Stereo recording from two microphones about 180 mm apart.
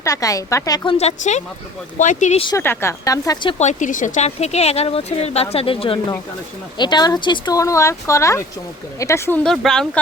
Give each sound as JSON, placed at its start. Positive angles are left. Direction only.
{"t": 0.0, "sound": "a woman's voice", "side_deg": 20}
{"t": 0.9, "sound": "speech", "side_deg": 40}
{"t": 2.6, "sound": "a woman's voice", "side_deg": 15}
{"t": 3.6, "sound": "speech", "side_deg": 40}
{"t": 9.4, "sound": "speech", "side_deg": 5}